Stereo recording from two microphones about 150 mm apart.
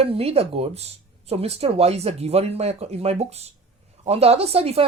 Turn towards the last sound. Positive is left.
turn(degrees=-40)  # may be behind; listen again after turning